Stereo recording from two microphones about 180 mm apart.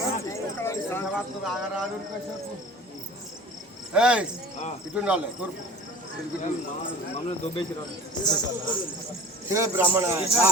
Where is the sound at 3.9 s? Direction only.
5° right (ahead or behind).